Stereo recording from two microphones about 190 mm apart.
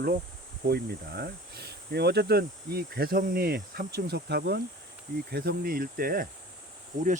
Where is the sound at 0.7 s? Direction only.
55° right (ahead or behind).